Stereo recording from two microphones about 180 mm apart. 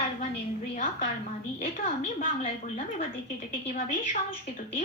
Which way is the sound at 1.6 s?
35° left (ahead or behind).